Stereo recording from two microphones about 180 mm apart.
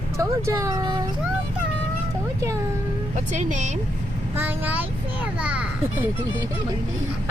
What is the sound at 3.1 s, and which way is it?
Speech, 40° right (ahead or behind).